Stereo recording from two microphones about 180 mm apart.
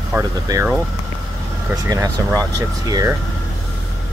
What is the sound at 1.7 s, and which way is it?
Speech, 20° right (ahead or behind).